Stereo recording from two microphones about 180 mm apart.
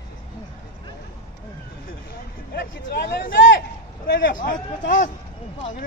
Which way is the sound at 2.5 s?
65° left (ahead or behind).